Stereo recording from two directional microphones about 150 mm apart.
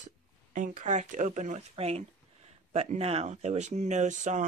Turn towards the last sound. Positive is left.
turn(degrees=-55)  # may be behind; listen again after turning